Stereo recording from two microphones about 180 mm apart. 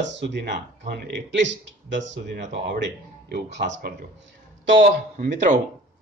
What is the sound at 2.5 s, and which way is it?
Speech, 75° right (ahead or behind).